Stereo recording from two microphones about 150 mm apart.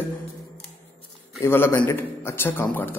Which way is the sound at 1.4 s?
15° left (ahead or behind).